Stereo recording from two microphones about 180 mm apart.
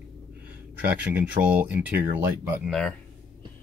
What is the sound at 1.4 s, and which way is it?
Speech, 55° right (ahead or behind).